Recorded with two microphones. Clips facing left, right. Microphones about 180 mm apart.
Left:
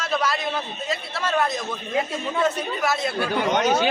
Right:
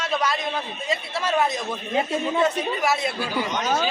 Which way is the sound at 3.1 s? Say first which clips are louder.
Left 4 dB; 65° left (ahead or behind).